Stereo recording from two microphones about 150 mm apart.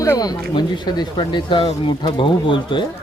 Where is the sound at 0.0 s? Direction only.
25° left (ahead or behind).